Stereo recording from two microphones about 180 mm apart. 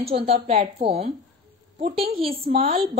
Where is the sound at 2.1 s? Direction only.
30° right (ahead or behind).